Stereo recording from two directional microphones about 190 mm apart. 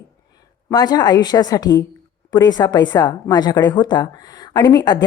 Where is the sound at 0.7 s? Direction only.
20° left (ahead or behind).